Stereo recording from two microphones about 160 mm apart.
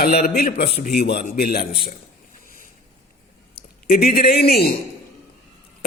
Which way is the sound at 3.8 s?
70° left (ahead or behind).